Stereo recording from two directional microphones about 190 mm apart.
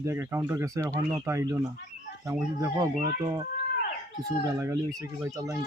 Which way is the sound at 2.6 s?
15° right (ahead or behind).